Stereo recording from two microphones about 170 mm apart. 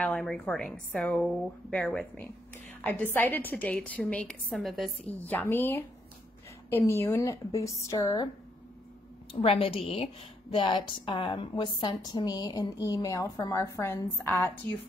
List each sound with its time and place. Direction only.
0.0 s a woman's voice: 5° left (ahead or behind); by 8.3 s 20° left (ahead or behind)
9.3 s a woman's voice: 35° left (ahead or behind); by 14.8 s 10° left (ahead or behind)